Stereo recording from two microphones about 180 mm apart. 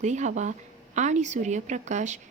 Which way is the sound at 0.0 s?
40° right (ahead or behind).